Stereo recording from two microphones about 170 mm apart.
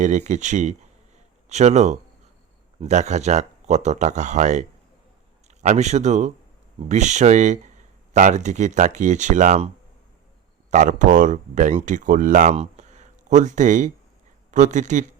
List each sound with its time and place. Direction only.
0.0 s speech: 45° right (ahead or behind)
10.7 s speech: 50° right (ahead or behind)